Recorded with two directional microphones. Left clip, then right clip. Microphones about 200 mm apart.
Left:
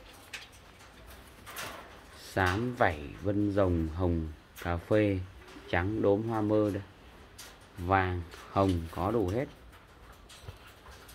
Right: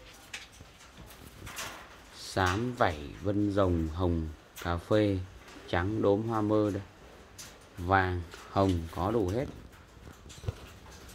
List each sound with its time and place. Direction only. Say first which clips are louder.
2.3 s speech: even; 15° right (ahead or behind)
7.8 s speech: right 1 dB; 15° right (ahead or behind)